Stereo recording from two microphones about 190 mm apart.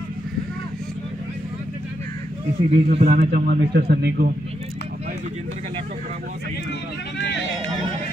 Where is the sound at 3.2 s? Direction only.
55° right (ahead or behind).